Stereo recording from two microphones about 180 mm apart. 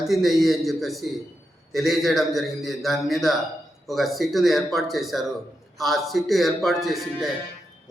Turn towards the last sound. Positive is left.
turn(degrees=0)  # may be behind; listen again after turning